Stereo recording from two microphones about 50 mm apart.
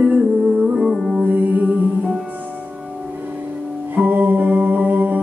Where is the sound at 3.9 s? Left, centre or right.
Right.